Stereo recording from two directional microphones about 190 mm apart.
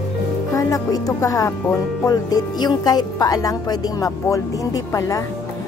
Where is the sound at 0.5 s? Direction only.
15° left (ahead or behind).